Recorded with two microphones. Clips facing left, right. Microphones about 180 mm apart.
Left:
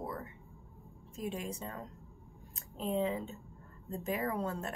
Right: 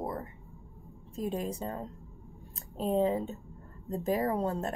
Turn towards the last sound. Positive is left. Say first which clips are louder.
# right 5 dB
turn(degrees=-35)  # may be behind; listen again after turning